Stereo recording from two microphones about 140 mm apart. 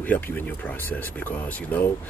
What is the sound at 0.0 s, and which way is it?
Speech, 10° left (ahead or behind).